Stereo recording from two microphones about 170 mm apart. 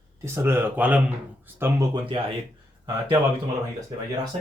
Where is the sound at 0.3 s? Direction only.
15° right (ahead or behind).